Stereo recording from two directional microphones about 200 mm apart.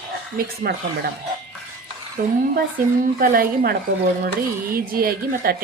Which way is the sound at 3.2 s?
45° right (ahead or behind).